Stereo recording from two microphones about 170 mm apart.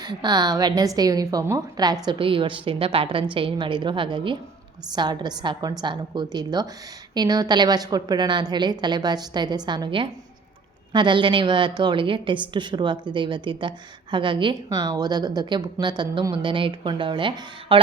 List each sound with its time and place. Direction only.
0.0 s a woman's voice: 25° right (ahead or behind)